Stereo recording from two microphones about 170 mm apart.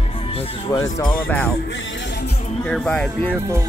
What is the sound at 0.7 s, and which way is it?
Speech, 20° left (ahead or behind).